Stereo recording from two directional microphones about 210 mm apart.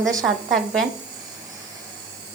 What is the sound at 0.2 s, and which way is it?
Speech, centre (ahead or behind).